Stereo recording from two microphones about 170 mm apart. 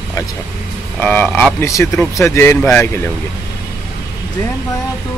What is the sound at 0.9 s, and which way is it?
Speech, 10° left (ahead or behind).